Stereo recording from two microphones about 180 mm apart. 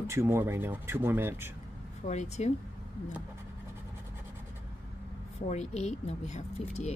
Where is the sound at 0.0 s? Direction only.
15° right (ahead or behind).